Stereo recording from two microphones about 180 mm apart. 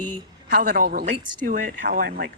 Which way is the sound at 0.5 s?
55° right (ahead or behind).